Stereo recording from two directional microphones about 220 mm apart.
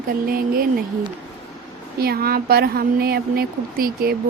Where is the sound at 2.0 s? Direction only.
45° right (ahead or behind).